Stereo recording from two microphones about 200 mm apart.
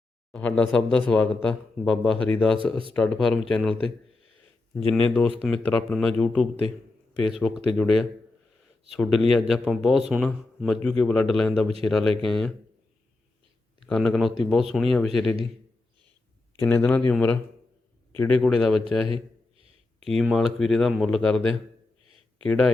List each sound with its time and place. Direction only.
0.3 s speech: 5° left (ahead or behind)
4.9 s a man's voice: 10° left (ahead or behind)
13.8 s speech: 5° left (ahead or behind)
16.6 s a man's voice: 10° left (ahead or behind)
20.1 s speech: centre (ahead or behind)